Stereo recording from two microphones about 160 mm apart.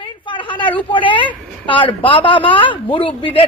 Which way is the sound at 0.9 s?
30° left (ahead or behind).